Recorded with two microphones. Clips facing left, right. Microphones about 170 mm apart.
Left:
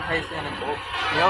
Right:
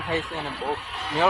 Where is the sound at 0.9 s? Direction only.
80° left.